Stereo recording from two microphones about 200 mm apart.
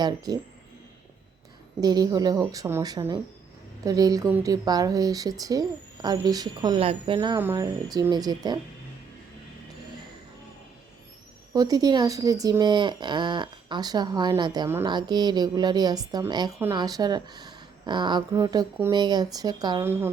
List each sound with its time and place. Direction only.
0.3 s a woman's voice: 20° right (ahead or behind)
1.8 s a woman's voice: 20° right (ahead or behind)
7.3 s a woman's voice: 15° right (ahead or behind)
11.5 s a woman's voice: 20° right (ahead or behind)